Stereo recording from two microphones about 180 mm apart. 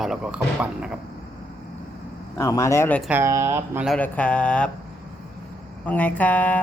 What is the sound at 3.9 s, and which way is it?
Speech, 5° left (ahead or behind).